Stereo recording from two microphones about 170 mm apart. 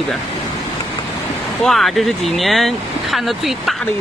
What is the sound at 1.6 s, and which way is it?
Speech, centre (ahead or behind).